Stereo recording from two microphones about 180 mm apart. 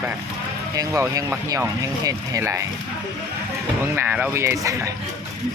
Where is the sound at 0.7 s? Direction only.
20° right (ahead or behind).